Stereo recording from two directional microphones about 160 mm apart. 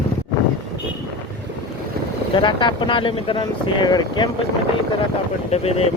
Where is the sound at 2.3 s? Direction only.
30° left (ahead or behind).